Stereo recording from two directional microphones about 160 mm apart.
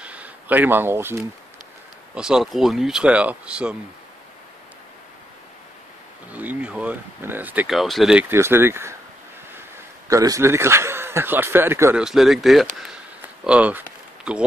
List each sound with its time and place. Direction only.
0.0 s a sound: 10° right (ahead or behind)
2.1 s speech: 5° right (ahead or behind)
6.3 s speech: 10° right (ahead or behind)
10.0 s speech: 20° right (ahead or behind)
12.0 s speech: centre (ahead or behind)
12.8 s a sound: 5° right (ahead or behind)